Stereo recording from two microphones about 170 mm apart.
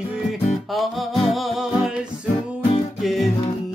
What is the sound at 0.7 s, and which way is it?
Music, centre (ahead or behind).